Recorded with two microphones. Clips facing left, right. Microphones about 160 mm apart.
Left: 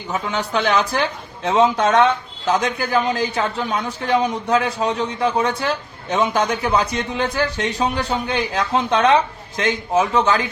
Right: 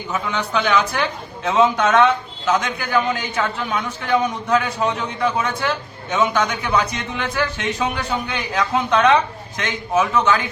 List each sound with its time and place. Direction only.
0.1 s a man's voice: 35° left (ahead or behind)